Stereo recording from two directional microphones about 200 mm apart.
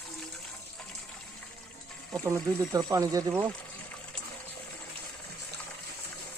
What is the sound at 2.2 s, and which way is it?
Speech, 15° right (ahead or behind).